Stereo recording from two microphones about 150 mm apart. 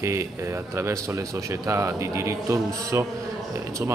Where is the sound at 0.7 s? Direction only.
20° right (ahead or behind).